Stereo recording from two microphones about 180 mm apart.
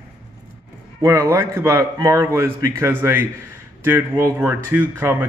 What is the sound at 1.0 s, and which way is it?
Speech, 15° right (ahead or behind).